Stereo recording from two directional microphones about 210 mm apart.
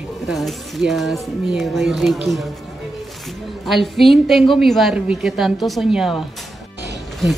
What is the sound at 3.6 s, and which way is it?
A woman's voice, centre (ahead or behind).